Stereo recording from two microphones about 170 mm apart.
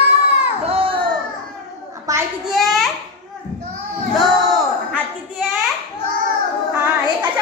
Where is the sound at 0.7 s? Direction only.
35° right (ahead or behind).